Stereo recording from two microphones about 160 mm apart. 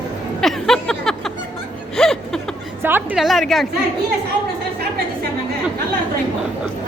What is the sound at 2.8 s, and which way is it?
Speech, 15° right (ahead or behind).